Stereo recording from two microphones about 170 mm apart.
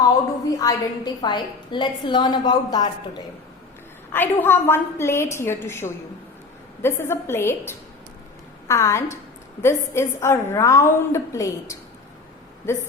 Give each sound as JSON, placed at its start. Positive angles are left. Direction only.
{"t": 0.4, "sound": "a woman's voice", "side_deg": 20}
{"t": 4.1, "sound": "a woman's voice", "side_deg": 10}